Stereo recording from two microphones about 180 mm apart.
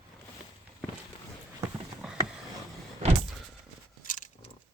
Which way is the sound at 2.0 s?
5° right (ahead or behind).